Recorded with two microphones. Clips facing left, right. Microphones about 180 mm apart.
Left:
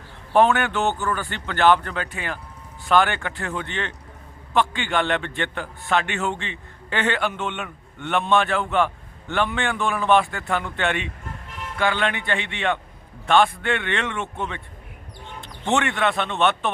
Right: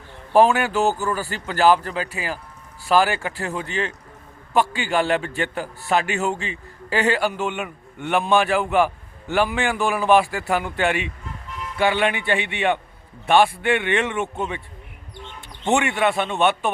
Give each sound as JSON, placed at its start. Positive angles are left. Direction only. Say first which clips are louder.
{"t": 0.3, "sound": "a man's voice", "louder": "right 2 dB", "side_deg": -5}
{"t": 0.9, "sound": "speech", "louder": "right 2 dB", "side_deg": -35}
{"t": 1.5, "sound": "a man's voice", "louder": "right 1 dB", "side_deg": -5}
{"t": 3.3, "sound": "speech", "louder": "right 2 dB", "side_deg": -35}
{"t": 4.9, "sound": "a man's voice", "louder": "right 2 dB", "side_deg": -5}
{"t": 15.6, "sound": "a man's voice", "louder": "right 2 dB", "side_deg": -15}